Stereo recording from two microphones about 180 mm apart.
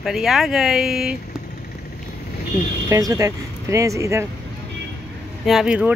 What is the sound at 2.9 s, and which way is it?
Speech, 20° right (ahead or behind).